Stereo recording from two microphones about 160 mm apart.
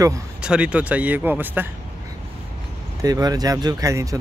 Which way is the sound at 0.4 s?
5° right (ahead or behind).